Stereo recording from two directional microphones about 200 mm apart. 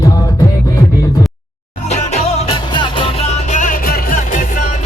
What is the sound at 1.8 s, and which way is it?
Music, 35° left (ahead or behind).